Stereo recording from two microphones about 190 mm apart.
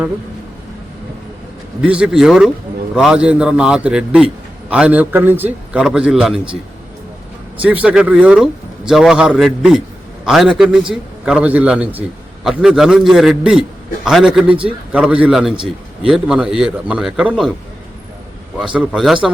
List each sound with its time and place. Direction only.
1.8 s a man's voice: 5° right (ahead or behind)
7.6 s a man's voice: 10° right (ahead or behind)
18.6 s a man's voice: 5° right (ahead or behind)